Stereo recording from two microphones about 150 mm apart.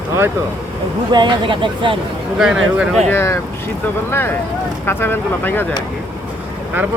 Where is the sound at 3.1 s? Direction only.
20° left (ahead or behind).